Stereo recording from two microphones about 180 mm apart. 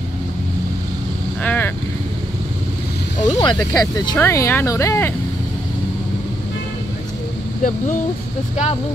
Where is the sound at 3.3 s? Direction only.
25° left (ahead or behind).